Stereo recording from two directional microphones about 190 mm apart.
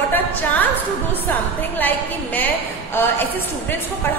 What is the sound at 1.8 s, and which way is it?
A woman's voice, 10° left (ahead or behind).